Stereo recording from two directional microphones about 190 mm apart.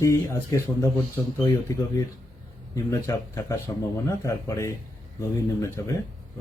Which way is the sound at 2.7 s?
15° left (ahead or behind).